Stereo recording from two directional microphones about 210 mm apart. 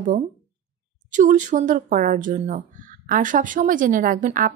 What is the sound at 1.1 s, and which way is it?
A woman's voice, 35° right (ahead or behind).